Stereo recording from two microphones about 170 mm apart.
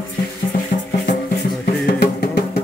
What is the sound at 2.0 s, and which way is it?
Music, 70° left (ahead or behind).